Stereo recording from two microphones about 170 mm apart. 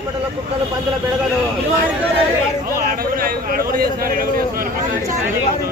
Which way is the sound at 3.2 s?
55° right (ahead or behind).